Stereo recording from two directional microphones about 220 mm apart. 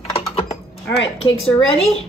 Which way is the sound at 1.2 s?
25° left (ahead or behind).